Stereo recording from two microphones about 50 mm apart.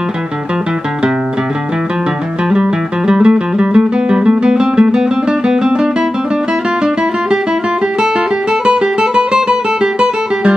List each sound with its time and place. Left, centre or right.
2.5 s music: centre
8.6 s music: centre